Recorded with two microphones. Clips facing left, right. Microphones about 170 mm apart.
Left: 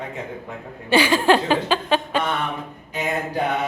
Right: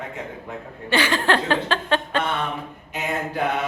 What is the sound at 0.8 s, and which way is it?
Speech, 10° left (ahead or behind).